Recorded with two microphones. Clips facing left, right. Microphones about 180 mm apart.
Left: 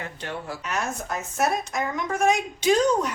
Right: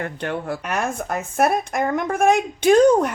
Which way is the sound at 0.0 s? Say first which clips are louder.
Right 7 dB; 55° right (ahead or behind).